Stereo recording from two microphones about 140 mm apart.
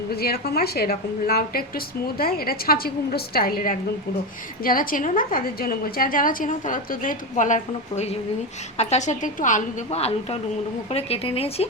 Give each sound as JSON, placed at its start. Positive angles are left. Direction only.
{"t": 0.1, "sound": "a woman's voice", "side_deg": 90}
{"t": 10.0, "sound": "speech", "side_deg": 45}